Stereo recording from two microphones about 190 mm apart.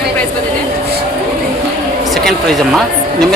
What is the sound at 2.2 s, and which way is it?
Speech, centre (ahead or behind).